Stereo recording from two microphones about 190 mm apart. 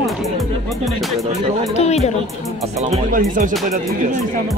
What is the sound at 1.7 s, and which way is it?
Speech, 35° left (ahead or behind).